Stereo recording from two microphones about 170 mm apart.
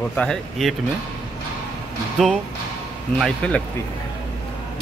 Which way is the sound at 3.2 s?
5° left (ahead or behind).